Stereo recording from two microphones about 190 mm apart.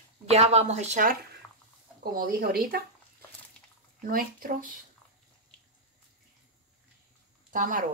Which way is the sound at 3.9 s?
45° right (ahead or behind).